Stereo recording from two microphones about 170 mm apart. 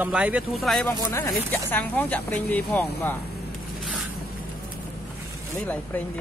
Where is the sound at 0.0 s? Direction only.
5° right (ahead or behind).